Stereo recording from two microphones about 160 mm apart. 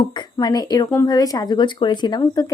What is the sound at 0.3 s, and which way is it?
A woman's voice, 25° left (ahead or behind).